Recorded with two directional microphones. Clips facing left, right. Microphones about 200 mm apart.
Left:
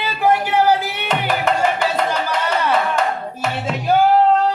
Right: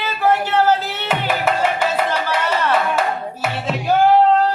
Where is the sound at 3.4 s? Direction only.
5° right (ahead or behind).